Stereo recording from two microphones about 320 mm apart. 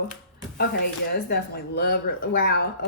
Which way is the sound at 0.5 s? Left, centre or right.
Left.